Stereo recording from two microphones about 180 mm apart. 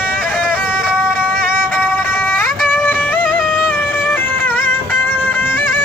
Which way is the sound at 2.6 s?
10° left (ahead or behind).